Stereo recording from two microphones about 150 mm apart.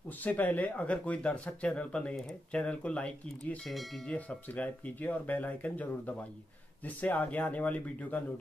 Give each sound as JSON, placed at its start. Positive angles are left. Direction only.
{"t": 0.2, "sound": "speech", "side_deg": 10}